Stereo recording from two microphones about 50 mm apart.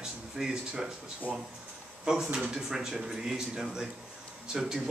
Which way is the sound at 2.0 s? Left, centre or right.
Centre.